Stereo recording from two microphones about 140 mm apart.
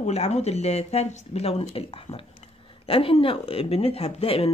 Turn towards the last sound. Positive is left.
turn(degrees=45)  # may be behind; listen again after turning